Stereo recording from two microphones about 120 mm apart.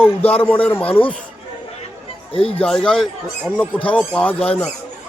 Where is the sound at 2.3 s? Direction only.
50° left (ahead or behind).